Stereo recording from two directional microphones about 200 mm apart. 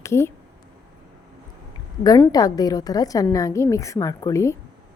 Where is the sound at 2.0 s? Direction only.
15° left (ahead or behind).